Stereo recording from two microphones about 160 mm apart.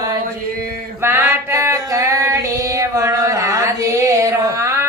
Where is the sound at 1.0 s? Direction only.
15° right (ahead or behind).